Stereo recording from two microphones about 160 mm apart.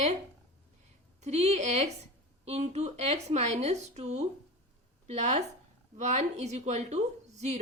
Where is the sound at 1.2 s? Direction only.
45° right (ahead or behind).